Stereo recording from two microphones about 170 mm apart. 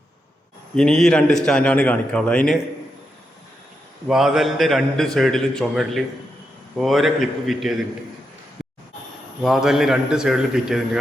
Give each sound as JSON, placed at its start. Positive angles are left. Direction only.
{"t": 0.8, "sound": "a man's voice", "side_deg": 5}
{"t": 4.1, "sound": "a man's voice", "side_deg": 0}
{"t": 8.6, "sound": "a sound", "side_deg": 0}
{"t": 9.4, "sound": "a man's voice", "side_deg": 0}